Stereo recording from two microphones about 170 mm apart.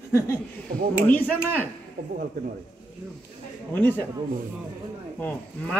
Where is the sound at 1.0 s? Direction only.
10° left (ahead or behind).